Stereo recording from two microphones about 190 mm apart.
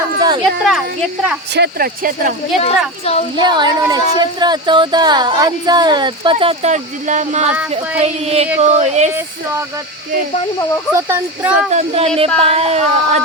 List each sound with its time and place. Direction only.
0.4 s a woman's voice: centre (ahead or behind)
1.5 s speech: 55° right (ahead or behind)
2.6 s speech: 35° left (ahead or behind)
3.3 s speech: 25° right (ahead or behind)
10.9 s speech: 15° right (ahead or behind)
11.7 s speech: 35° right (ahead or behind)